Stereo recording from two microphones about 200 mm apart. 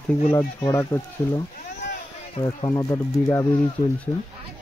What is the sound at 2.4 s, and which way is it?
Speech, 20° left (ahead or behind).